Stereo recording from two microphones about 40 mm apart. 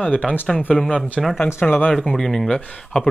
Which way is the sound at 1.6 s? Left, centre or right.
Left.